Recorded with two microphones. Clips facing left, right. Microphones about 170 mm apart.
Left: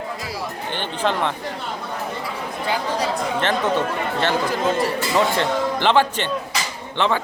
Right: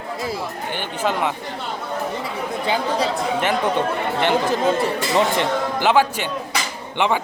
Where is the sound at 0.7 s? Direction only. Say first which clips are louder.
Left 1 dB; 10° right (ahead or behind).